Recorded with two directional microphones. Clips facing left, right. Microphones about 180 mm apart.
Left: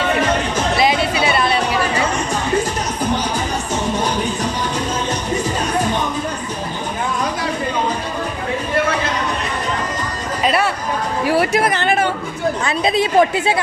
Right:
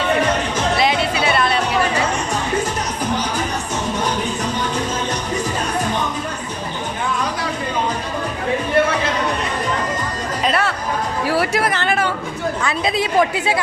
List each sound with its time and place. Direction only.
0.8 s music: 5° left (ahead or behind)
10.4 s chatter: 10° left (ahead or behind)
11.3 s chatter: 20° left (ahead or behind)
12.6 s a woman's voice: 25° left (ahead or behind)